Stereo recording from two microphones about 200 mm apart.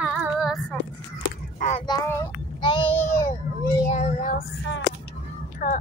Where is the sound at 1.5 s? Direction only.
35° left (ahead or behind).